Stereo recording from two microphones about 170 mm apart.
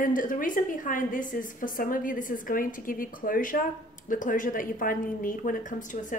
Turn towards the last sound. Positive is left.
turn(degrees=50)  # may be behind; listen again after turning